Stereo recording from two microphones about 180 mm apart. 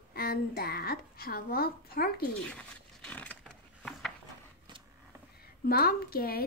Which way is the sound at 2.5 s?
5° left (ahead or behind).